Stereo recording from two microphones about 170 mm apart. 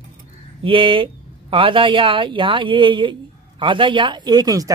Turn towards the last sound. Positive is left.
turn(degrees=-20)  # may be behind; listen again after turning